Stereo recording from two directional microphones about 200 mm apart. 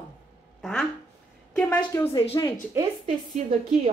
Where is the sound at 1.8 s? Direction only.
15° left (ahead or behind).